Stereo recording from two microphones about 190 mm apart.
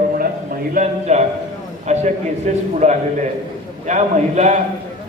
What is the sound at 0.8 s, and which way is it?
A man's voice, 35° right (ahead or behind).